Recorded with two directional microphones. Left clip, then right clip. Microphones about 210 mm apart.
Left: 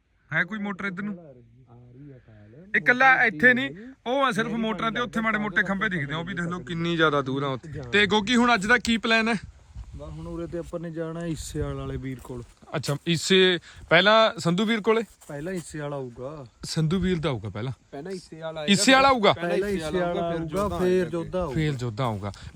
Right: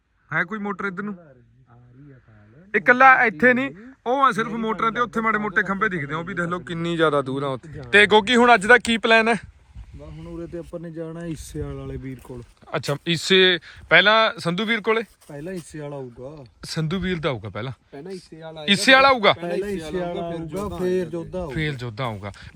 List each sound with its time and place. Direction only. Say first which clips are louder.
0.3 s a man's voice: right 2 dB; centre (ahead or behind)
2.7 s a man's voice: right 5 dB; centre (ahead or behind)
10.0 s a sound: left 1 dB; 20° left (ahead or behind)
10.3 s speech: even; centre (ahead or behind); by 15.0 s 15° left (ahead or behind)
15.3 s a man's voice: even; centre (ahead or behind)
16.4 s a man's voice: right 3 dB; 15° left (ahead or behind)
18.7 s speech: right 4 dB; 15° left (ahead or behind)
19.4 s a man's voice: left 1 dB; 5° left (ahead or behind)
21.5 s speech: right 1 dB; 15° left (ahead or behind)